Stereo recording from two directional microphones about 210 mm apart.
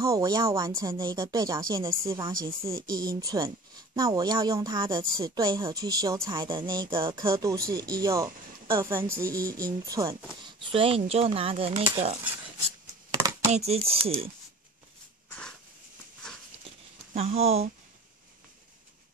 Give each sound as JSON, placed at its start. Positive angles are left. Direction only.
{"t": 0.0, "sound": "speech", "side_deg": -15}
{"t": 13.2, "sound": "a sound", "side_deg": -15}
{"t": 13.5, "sound": "speech", "side_deg": -30}
{"t": 17.1, "sound": "speech", "side_deg": -30}